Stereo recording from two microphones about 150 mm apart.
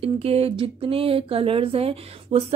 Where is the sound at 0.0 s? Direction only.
40° right (ahead or behind).